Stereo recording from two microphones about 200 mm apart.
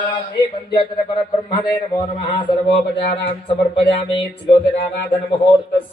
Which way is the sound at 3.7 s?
25° left (ahead or behind).